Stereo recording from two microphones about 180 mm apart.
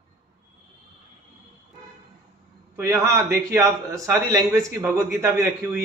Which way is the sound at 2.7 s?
15° right (ahead or behind).